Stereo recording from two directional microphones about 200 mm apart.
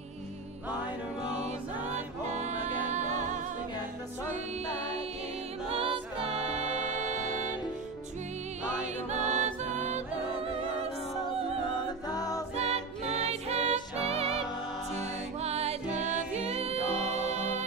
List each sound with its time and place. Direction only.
1.9 s music: 35° right (ahead or behind)
5.7 s music: 30° right (ahead or behind)
9.1 s music: 35° right (ahead or behind)
11.7 s music: 20° left (ahead or behind)
12.5 s music: 30° right (ahead or behind)
15.4 s music: 30° right (ahead or behind)